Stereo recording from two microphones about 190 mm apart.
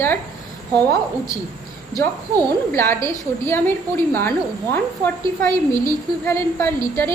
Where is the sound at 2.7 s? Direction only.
15° left (ahead or behind).